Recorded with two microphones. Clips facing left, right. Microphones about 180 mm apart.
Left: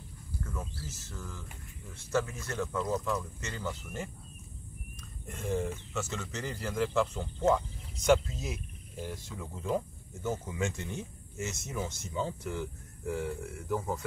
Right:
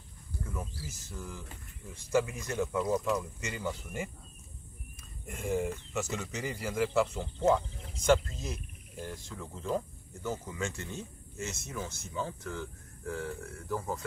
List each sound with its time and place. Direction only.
0.8 s speech: 15° right (ahead or behind)
5.2 s speech: 10° right (ahead or behind)
10.4 s speech: 15° left (ahead or behind)